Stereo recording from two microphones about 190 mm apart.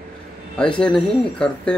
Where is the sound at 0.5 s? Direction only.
5° left (ahead or behind).